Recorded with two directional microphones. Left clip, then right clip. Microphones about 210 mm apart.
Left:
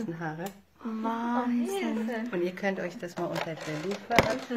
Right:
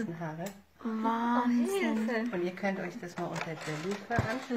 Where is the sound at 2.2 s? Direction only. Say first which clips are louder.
Left 3 dB; 40° left (ahead or behind).